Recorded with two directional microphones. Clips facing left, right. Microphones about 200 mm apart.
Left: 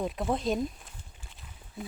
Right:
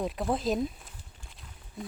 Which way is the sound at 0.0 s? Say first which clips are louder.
Even; centre (ahead or behind).